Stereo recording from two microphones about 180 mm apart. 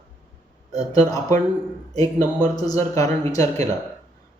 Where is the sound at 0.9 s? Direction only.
20° left (ahead or behind).